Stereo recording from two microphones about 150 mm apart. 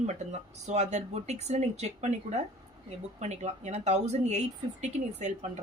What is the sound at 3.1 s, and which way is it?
Speech, 50° right (ahead or behind).